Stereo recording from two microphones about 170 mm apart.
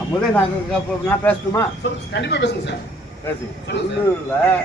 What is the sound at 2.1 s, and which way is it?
Speech, 85° left.